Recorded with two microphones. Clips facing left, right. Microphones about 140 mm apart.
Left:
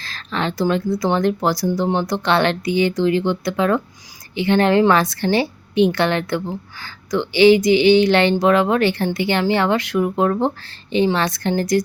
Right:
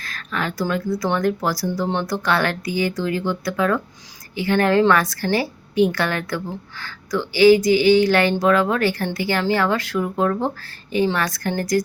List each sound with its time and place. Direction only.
0.0 s speech: 30° left (ahead or behind)